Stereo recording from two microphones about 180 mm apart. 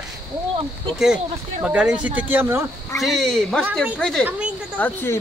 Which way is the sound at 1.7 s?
5° right (ahead or behind).